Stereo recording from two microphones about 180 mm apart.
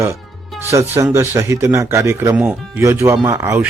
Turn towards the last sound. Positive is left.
turn(degrees=-10)  # may be behind; listen again after turning